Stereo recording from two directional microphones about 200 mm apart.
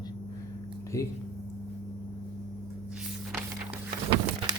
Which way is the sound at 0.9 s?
15° left (ahead or behind).